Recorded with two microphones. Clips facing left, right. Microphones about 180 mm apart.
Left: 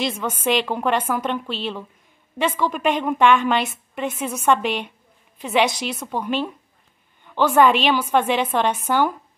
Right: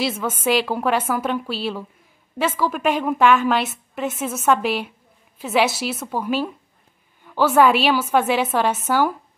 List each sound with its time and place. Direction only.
0.0 s a woman's voice: 5° right (ahead or behind)